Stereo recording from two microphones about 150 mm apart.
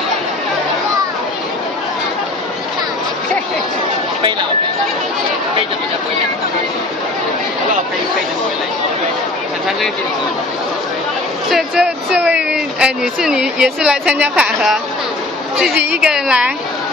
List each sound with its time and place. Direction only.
11.5 s speech: 5° right (ahead or behind)